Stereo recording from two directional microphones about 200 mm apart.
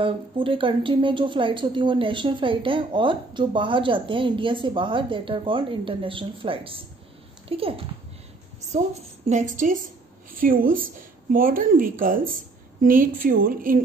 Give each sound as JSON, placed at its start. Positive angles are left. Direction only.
{"t": 0.0, "sound": "a woman's voice", "side_deg": -25}
{"t": 9.3, "sound": "a woman's voice", "side_deg": -40}